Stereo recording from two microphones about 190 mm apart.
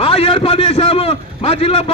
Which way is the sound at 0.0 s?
30° left (ahead or behind).